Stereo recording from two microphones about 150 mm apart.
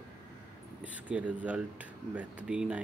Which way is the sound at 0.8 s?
10° right (ahead or behind).